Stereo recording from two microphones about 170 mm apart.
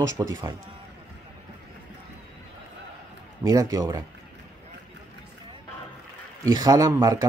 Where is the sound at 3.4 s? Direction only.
20° right (ahead or behind).